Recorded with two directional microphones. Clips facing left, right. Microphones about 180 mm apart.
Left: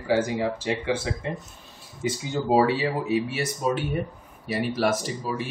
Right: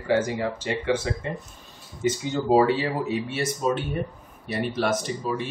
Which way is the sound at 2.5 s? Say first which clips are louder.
Right 1 dB; 5° left (ahead or behind).